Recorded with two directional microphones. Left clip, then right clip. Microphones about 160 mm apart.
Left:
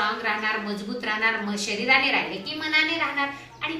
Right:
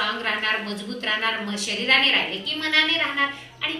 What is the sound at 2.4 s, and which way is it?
Speech, 15° left (ahead or behind).